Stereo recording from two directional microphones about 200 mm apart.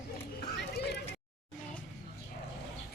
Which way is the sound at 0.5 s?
55° left (ahead or behind).